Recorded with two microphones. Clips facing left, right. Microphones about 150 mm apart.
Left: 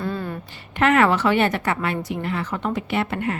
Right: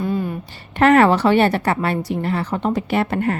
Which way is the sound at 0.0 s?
15° right (ahead or behind).